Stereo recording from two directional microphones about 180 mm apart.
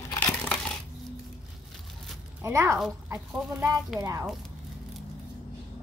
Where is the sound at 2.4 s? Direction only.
15° right (ahead or behind).